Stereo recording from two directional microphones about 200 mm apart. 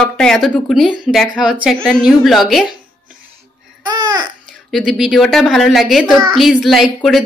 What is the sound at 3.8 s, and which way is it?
Babbling, 20° right (ahead or behind).